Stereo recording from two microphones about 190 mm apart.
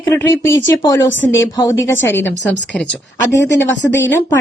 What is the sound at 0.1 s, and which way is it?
A woman's voice, 10° left (ahead or behind).